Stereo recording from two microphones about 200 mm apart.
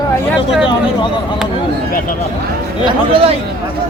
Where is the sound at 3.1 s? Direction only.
30° right (ahead or behind).